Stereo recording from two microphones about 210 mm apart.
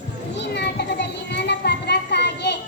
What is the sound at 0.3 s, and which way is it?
Children playing, 55° left (ahead or behind).